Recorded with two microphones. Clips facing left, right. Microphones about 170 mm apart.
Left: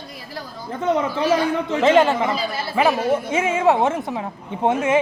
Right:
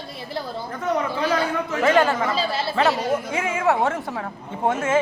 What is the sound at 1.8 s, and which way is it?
Speech, 20° left (ahead or behind).